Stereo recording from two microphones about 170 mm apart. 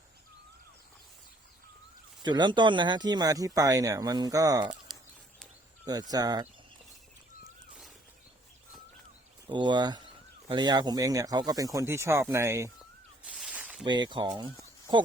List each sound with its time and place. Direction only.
2.2 s speech: 25° right (ahead or behind)
5.8 s speech: 25° right (ahead or behind)
9.5 s speech: 25° right (ahead or behind)
13.2 s snake: 5° right (ahead or behind)
13.8 s speech: 25° right (ahead or behind)